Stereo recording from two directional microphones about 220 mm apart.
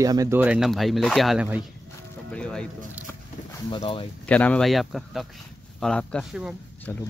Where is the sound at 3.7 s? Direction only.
25° left (ahead or behind).